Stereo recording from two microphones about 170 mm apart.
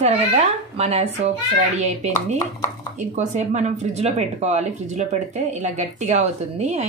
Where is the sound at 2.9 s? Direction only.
45° right (ahead or behind).